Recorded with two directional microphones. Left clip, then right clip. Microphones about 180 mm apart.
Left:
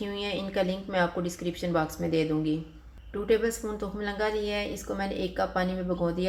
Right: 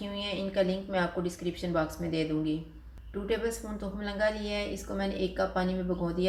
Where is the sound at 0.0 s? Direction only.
50° left (ahead or behind).